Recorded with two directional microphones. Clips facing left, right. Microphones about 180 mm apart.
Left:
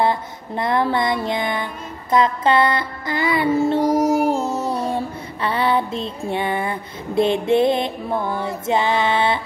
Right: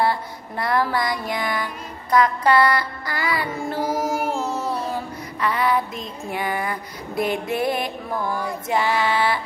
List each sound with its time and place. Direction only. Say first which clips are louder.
0.0 s music: left 2 dB; 20° left (ahead or behind)
3.8 s child singing: left 7 dB; centre (ahead or behind)
4.8 s music: left 4 dB; 30° left (ahead or behind)